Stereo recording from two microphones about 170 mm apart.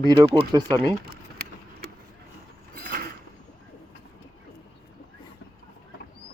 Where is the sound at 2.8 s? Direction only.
55° right (ahead or behind).